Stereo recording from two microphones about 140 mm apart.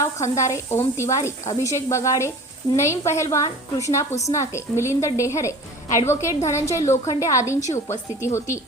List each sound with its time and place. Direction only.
0.0 s a woman's voice: 20° left (ahead or behind)